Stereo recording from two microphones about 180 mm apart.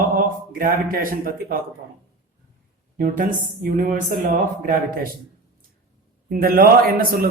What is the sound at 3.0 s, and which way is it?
Speech, 55° right (ahead or behind).